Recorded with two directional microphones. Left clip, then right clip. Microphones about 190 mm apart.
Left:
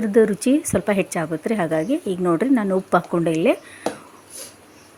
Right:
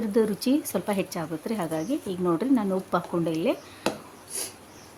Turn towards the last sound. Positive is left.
turn(degrees=20)  # may be behind; listen again after turning